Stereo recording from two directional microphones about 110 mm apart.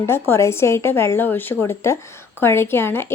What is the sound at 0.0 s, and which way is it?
A woman's voice, 25° left (ahead or behind).